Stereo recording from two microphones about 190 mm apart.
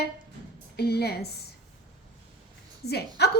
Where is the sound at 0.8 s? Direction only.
55° left (ahead or behind).